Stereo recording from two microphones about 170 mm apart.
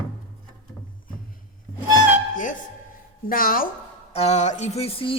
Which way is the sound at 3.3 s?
55° left (ahead or behind).